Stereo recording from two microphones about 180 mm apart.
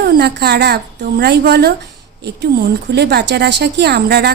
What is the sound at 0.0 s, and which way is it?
A woman's voice, 65° right (ahead or behind).